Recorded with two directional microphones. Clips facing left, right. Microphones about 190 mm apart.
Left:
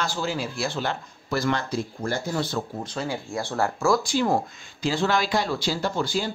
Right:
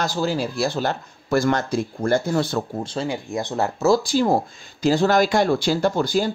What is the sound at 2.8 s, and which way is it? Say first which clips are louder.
Speech: right 4 dB; 30° right (ahead or behind).